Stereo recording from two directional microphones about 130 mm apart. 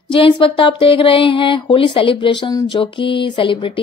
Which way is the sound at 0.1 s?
40° left (ahead or behind).